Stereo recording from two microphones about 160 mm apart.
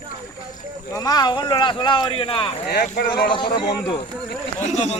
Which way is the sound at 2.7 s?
70° left (ahead or behind).